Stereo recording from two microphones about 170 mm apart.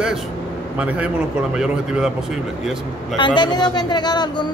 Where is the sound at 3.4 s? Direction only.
25° left (ahead or behind).